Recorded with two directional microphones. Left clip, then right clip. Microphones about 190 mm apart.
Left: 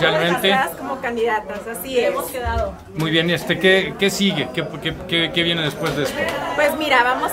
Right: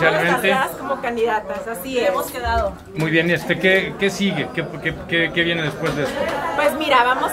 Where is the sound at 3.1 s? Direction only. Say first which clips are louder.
Right 1 dB; 25° left (ahead or behind).